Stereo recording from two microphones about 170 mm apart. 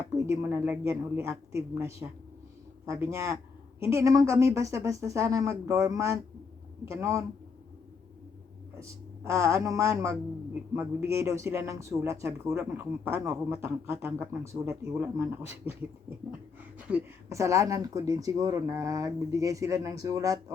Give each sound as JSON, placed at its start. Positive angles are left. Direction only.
{"t": 0.2, "sound": "a woman's voice", "side_deg": -15}
{"t": 8.8, "sound": "a woman's voice", "side_deg": -15}
{"t": 16.7, "sound": "speech", "side_deg": -10}